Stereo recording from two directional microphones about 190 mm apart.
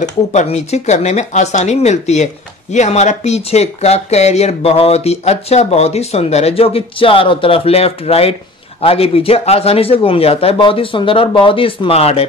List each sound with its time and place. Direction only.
0.0 s speech: 40° left (ahead or behind)